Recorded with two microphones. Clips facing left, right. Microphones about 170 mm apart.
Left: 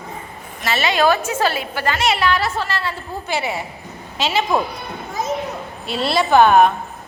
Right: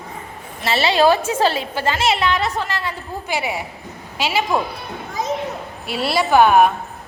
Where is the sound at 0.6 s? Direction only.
30° right (ahead or behind); by 4.4 s 10° right (ahead or behind).